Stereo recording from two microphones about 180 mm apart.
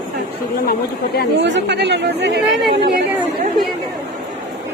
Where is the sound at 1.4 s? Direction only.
75° right (ahead or behind).